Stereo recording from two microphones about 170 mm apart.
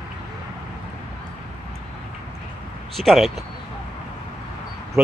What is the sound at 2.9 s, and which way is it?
Speech, centre (ahead or behind).